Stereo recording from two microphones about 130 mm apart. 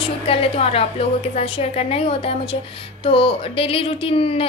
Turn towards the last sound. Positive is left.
turn(degrees=45)  # may be behind; listen again after turning